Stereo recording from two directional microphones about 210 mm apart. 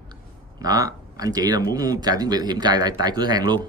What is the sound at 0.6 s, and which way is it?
Speech, 15° right (ahead or behind).